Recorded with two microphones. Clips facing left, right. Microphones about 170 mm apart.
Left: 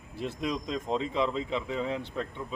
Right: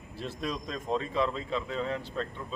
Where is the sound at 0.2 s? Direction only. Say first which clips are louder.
Left 3 dB; 15° left (ahead or behind).